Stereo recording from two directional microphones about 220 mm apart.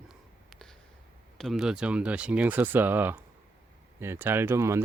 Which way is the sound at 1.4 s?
Centre (ahead or behind).